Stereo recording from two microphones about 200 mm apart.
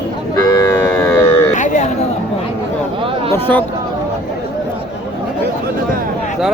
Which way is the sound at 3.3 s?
10° left (ahead or behind).